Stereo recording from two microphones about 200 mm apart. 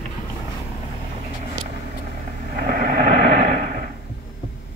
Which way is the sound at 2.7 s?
45° right (ahead or behind).